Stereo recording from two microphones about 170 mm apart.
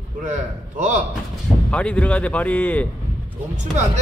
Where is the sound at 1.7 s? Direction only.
5° left (ahead or behind).